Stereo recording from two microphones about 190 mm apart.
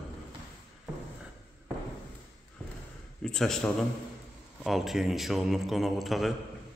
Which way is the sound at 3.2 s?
5° left (ahead or behind).